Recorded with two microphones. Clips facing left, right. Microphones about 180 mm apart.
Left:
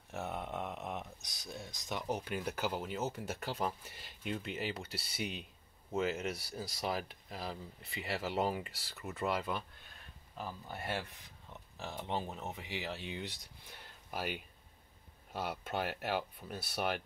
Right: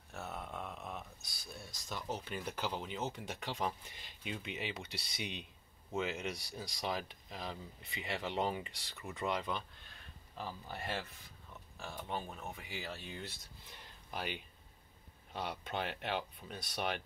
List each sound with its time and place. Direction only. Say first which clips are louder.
0.1 s speech: left 5 dB; 20° left (ahead or behind)
11.7 s speech: left 3 dB; 20° left (ahead or behind); by 17.0 s 5° left (ahead or behind)